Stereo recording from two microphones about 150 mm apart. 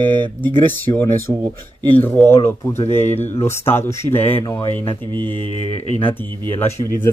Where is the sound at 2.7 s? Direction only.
45° left (ahead or behind).